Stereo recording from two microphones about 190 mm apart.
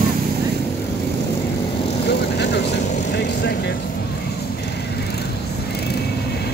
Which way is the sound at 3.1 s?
60° left (ahead or behind).